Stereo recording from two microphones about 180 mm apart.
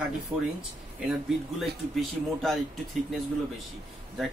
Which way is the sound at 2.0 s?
Centre (ahead or behind).